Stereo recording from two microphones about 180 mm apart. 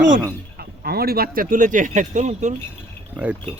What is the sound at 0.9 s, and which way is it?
Speech, 60° right (ahead or behind).